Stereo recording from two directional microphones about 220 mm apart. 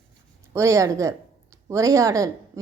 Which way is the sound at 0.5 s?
15° right (ahead or behind).